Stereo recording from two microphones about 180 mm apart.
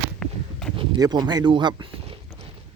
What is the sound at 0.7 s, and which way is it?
Speech, 25° right (ahead or behind).